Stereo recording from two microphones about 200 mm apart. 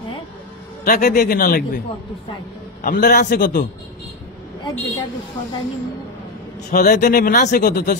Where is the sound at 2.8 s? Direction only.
45° left (ahead or behind).